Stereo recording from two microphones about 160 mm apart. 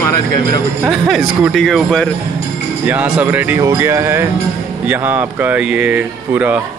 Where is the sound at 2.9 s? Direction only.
10° right (ahead or behind).